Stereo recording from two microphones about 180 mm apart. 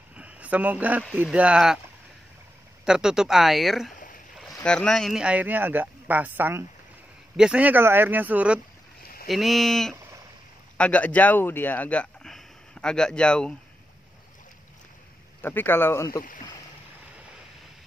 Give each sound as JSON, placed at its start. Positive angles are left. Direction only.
{"t": 0.1, "sound": "a sound", "side_deg": -5}
{"t": 1.1, "sound": "speech", "side_deg": -5}
{"t": 2.8, "sound": "speech", "side_deg": -5}
{"t": 3.9, "sound": "a sound", "side_deg": 45}
{"t": 4.6, "sound": "speech", "side_deg": 5}
{"t": 9.0, "sound": "boat", "side_deg": 55}
{"t": 9.3, "sound": "speech", "side_deg": 0}
{"t": 15.4, "sound": "speech", "side_deg": 10}